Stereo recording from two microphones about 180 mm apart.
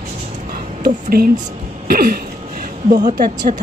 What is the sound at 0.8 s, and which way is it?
A woman's voice, 55° right (ahead or behind).